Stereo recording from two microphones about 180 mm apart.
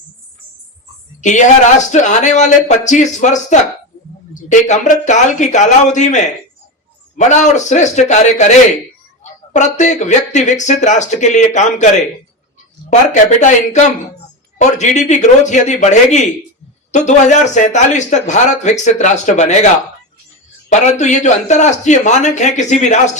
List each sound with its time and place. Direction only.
1.2 s a man's voice: 40° left (ahead or behind)
13.4 s a man's voice: 40° left (ahead or behind)